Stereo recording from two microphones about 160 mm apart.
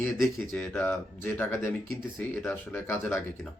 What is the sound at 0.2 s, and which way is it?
Speech, 5° left (ahead or behind).